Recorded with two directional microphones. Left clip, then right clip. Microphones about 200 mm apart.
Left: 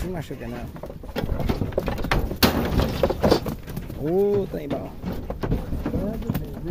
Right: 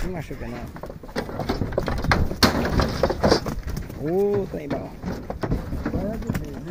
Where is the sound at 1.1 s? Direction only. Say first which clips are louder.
Right 1 dB; 5° left (ahead or behind).